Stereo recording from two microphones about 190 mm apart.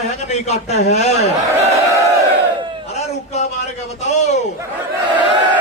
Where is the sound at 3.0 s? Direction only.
35° left (ahead or behind).